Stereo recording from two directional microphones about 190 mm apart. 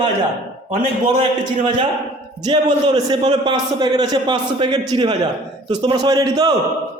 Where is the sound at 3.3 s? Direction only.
25° right (ahead or behind).